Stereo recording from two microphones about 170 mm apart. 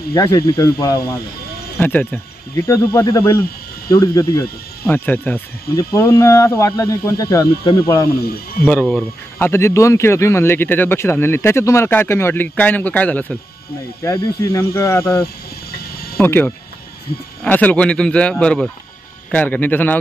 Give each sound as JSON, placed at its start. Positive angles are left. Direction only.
{"t": 0.1, "sound": "speech", "side_deg": 20}
{"t": 8.6, "sound": "speech", "side_deg": 10}